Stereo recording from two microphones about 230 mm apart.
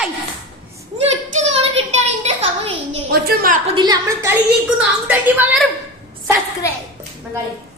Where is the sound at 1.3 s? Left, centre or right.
Right.